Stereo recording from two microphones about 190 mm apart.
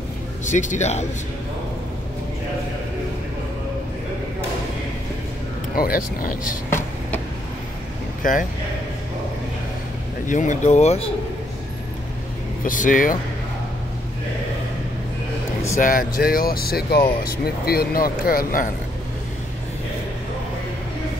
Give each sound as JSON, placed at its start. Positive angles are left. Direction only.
{"t": 0.5, "sound": "speech", "side_deg": 40}
{"t": 5.8, "sound": "speech", "side_deg": 50}
{"t": 8.2, "sound": "speech", "side_deg": 45}
{"t": 10.2, "sound": "speech", "side_deg": 40}
{"t": 12.6, "sound": "speech", "side_deg": 45}
{"t": 15.8, "sound": "speech", "side_deg": 45}